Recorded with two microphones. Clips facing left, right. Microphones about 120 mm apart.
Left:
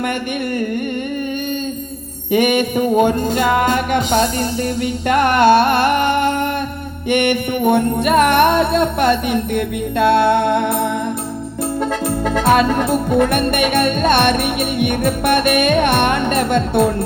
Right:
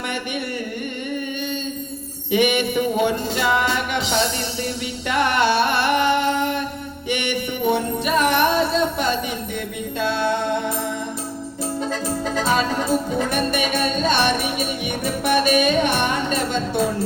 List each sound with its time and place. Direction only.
2.3 s music: 45° left (ahead or behind)